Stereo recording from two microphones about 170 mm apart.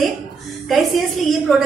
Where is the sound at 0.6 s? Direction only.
Centre (ahead or behind).